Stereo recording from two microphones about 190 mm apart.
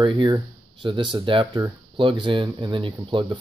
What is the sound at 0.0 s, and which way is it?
Speech, 25° right (ahead or behind).